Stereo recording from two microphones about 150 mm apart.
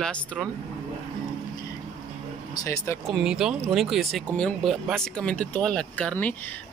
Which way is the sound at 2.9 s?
15° left (ahead or behind).